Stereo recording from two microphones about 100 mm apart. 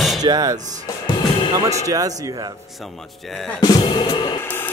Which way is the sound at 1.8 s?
35° right (ahead or behind).